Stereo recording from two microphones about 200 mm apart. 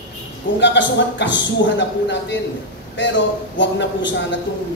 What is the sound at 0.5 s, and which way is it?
A man's voice, 65° left (ahead or behind).